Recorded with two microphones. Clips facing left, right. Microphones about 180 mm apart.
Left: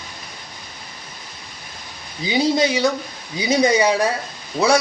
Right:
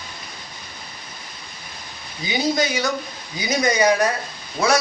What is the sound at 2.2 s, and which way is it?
A man's voice, 30° left (ahead or behind).